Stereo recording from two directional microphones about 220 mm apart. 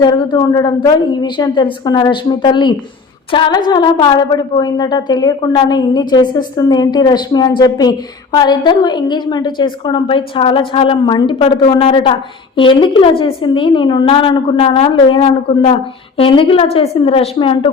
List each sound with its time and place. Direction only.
0.0 s a woman's voice: 20° left (ahead or behind)